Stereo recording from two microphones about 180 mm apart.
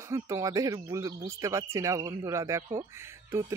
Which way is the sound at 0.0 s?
15° right (ahead or behind).